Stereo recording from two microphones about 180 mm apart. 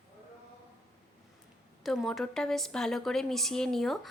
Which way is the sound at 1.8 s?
Centre (ahead or behind).